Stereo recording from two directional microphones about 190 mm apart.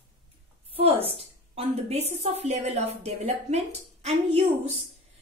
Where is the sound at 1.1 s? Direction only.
35° right (ahead or behind).